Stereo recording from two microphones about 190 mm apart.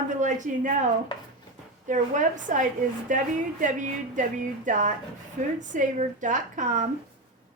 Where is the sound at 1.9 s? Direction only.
40° right (ahead or behind).